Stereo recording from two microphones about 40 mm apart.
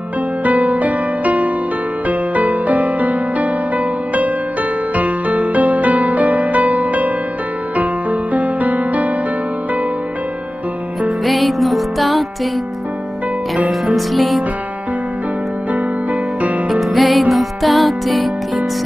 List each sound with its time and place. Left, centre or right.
0.4 s music: right
11.2 s music: centre
13.9 s music: centre
15.7 s music: right
16.9 s music: centre